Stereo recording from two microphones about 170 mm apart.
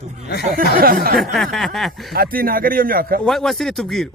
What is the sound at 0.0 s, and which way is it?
Speech, 40° right (ahead or behind).